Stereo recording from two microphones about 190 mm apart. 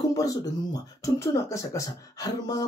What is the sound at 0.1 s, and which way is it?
Speech, 20° left (ahead or behind).